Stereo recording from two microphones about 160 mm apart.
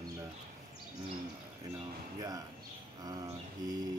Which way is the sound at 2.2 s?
20° right (ahead or behind).